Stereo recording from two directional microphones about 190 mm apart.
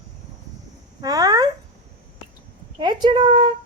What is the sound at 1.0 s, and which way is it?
Speech, 20° right (ahead or behind).